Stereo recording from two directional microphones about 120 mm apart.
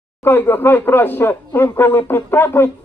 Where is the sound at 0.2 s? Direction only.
15° left (ahead or behind).